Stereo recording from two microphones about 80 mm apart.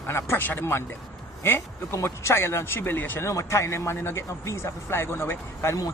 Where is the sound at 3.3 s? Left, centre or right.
Left.